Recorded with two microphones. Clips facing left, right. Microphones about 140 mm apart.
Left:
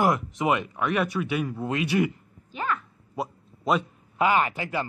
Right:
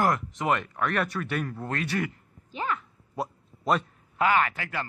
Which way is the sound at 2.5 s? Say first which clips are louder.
Left 1 dB; 20° right (ahead or behind).